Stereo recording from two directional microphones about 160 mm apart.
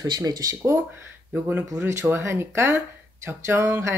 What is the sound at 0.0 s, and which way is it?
Speech, 25° right (ahead or behind).